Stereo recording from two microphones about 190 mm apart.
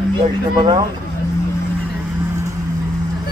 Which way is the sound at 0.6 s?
20° right (ahead or behind).